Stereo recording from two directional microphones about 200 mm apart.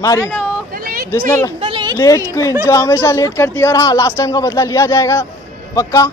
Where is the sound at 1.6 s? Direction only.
25° right (ahead or behind).